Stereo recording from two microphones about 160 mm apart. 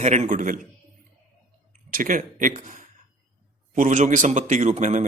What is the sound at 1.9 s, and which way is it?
Speech, 55° right (ahead or behind).